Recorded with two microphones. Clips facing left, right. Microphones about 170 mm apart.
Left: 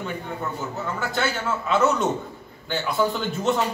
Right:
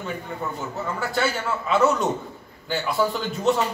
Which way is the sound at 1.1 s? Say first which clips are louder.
Right 1 dB; centre (ahead or behind).